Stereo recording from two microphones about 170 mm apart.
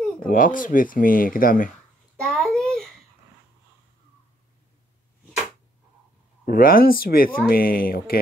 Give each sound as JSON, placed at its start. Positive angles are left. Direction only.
{"t": 0.2, "sound": "speech", "side_deg": 50}
{"t": 2.2, "sound": "a sound", "side_deg": 5}
{"t": 6.4, "sound": "speech", "side_deg": 55}